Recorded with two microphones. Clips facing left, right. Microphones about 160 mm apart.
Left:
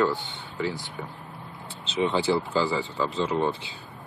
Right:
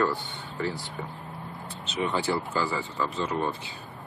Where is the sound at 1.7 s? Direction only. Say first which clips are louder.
Left 4 dB; 30° left (ahead or behind).